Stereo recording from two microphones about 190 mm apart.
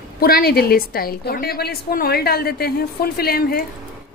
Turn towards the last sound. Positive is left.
turn(degrees=50)  # may be behind; listen again after turning